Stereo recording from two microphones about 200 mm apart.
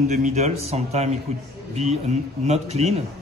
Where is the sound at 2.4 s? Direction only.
35° right (ahead or behind).